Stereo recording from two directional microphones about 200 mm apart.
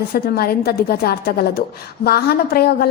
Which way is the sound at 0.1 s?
50° left (ahead or behind).